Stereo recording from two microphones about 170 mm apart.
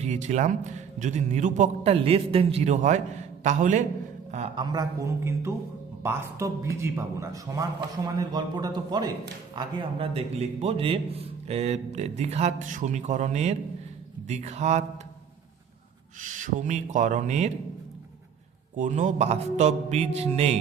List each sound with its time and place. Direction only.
0.0 s a man's voice: 40° right (ahead or behind)
4.5 s a man's voice: 25° right (ahead or behind); by 14.8 s 40° right (ahead or behind)
16.2 s a man's voice: 50° right (ahead or behind)
18.8 s a man's voice: 45° right (ahead or behind)